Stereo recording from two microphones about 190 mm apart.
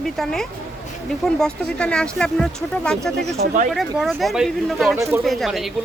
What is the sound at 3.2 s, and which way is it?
Speech, 35° right (ahead or behind).